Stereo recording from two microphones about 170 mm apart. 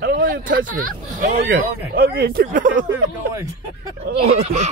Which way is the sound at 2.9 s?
15° right (ahead or behind).